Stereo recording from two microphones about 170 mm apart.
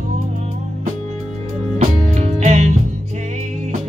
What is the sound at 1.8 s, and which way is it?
Music, 40° right (ahead or behind).